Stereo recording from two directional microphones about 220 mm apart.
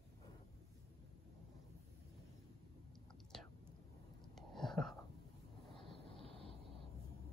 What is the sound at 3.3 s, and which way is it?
Whispering, centre (ahead or behind).